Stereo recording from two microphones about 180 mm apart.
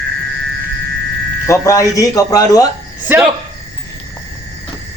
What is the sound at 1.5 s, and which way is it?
Speech, 15° left (ahead or behind).